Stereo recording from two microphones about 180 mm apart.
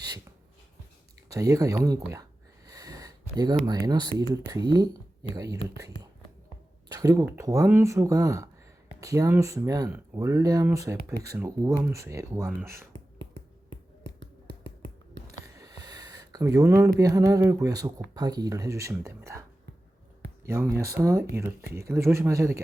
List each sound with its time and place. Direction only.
1.3 s speech: 20° right (ahead or behind)
2.6 s a sound: 20° right (ahead or behind)
3.8 s speech: 20° right (ahead or behind)
6.8 s speech: 20° right (ahead or behind)
15.5 s speech: 20° right (ahead or behind)